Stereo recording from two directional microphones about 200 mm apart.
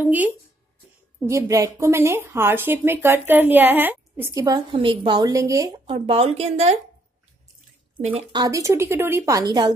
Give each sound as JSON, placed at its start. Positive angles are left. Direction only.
{"t": 0.0, "sound": "a woman's voice", "side_deg": -10}
{"t": 5.9, "sound": "a woman's voice", "side_deg": -30}
{"t": 8.0, "sound": "a woman's voice", "side_deg": -30}